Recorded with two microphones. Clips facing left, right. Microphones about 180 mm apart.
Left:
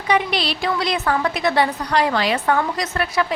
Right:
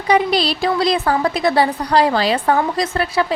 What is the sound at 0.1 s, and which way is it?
A woman's voice, 35° right (ahead or behind).